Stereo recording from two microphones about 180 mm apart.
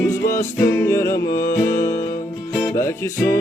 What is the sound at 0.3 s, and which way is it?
Music, 15° left (ahead or behind).